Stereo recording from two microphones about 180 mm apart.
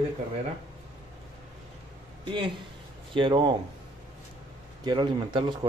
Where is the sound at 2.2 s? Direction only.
25° right (ahead or behind).